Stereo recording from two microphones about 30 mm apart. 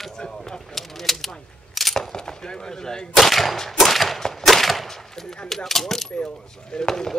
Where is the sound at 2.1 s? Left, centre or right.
Left.